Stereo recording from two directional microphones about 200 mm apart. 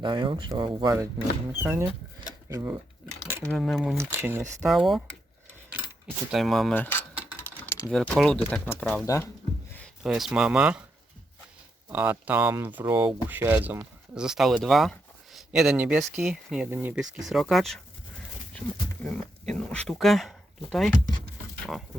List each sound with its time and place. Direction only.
0.0 s speech: 25° right (ahead or behind)
3.2 s a sound: 10° right (ahead or behind)
3.5 s speech: centre (ahead or behind)
3.9 s speech: 15° right (ahead or behind)
4.6 s speech: centre (ahead or behind)
6.3 s keys jangling: centre (ahead or behind)
7.9 s speech: 5° left (ahead or behind)
9.7 s speech: centre (ahead or behind)
11.9 s speech: 10° right (ahead or behind)
19.0 s speech: 5° left (ahead or behind)